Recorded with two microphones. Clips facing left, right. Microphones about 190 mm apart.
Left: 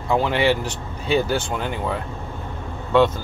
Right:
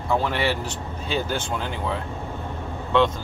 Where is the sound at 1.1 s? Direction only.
10° left (ahead or behind).